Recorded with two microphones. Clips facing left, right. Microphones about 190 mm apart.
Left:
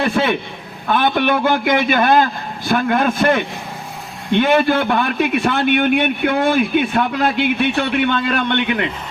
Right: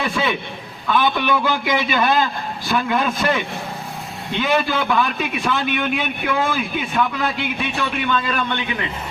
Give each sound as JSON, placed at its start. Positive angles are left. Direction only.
{"t": 0.0, "sound": "a man's voice", "side_deg": 55}